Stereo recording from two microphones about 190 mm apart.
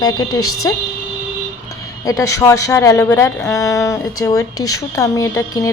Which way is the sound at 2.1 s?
15° left (ahead or behind).